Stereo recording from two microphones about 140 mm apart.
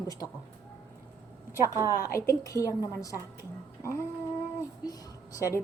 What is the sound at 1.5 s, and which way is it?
Speech, 25° right (ahead or behind).